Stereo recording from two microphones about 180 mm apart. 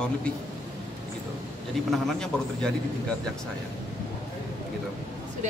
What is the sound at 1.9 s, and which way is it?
Speech, 5° left (ahead or behind).